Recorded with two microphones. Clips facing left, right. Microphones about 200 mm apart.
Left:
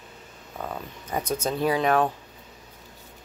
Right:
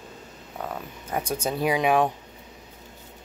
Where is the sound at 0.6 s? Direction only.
5° right (ahead or behind).